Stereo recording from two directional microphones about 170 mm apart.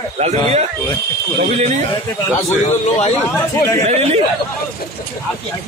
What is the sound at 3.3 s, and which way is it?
Speech, 15° left (ahead or behind).